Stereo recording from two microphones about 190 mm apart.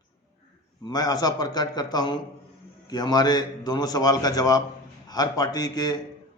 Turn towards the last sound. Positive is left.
turn(degrees=20)  # may be behind; listen again after turning